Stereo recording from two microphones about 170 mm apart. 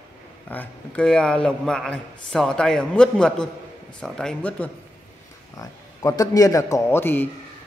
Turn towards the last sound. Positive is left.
turn(degrees=15)  # may be behind; listen again after turning